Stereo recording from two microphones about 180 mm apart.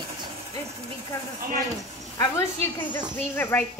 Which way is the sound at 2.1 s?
15° left (ahead or behind).